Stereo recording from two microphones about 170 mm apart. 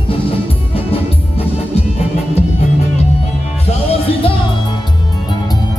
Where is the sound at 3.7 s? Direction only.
35° left (ahead or behind).